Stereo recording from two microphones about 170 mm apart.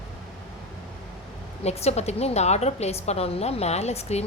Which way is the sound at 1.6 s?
40° left (ahead or behind).